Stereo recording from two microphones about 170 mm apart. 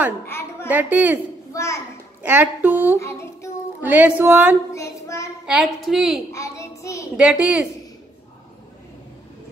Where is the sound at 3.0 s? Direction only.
15° left (ahead or behind).